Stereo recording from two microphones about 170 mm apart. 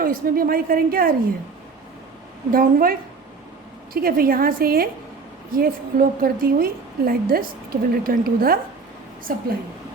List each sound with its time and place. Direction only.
0.0 s a woman's voice: 55° right (ahead or behind)
2.5 s a woman's voice: 60° right (ahead or behind)
3.9 s a woman's voice: 60° right (ahead or behind)